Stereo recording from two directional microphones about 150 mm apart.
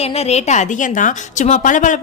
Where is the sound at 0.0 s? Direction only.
45° left (ahead or behind).